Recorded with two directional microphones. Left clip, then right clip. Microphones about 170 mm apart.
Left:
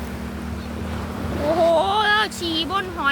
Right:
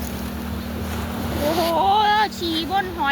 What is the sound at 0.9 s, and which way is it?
Vehicle, 60° right (ahead or behind).